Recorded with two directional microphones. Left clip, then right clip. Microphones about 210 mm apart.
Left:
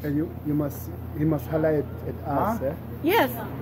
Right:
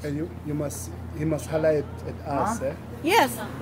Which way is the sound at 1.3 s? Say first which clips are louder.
Right 2 dB; centre (ahead or behind).